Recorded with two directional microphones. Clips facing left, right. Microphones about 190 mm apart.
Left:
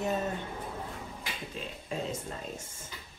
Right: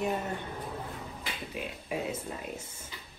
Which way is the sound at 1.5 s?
10° right (ahead or behind).